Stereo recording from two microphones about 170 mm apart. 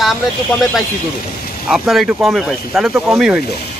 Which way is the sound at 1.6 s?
Centre (ahead or behind).